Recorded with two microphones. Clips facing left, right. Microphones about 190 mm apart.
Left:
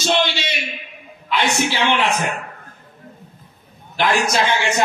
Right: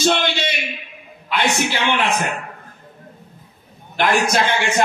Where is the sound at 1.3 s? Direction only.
55° right (ahead or behind).